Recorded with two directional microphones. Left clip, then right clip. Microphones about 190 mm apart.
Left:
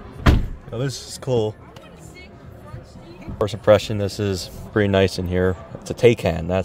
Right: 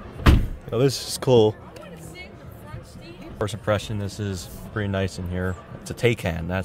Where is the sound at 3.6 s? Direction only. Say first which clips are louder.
Left 11 dB; 20° left (ahead or behind).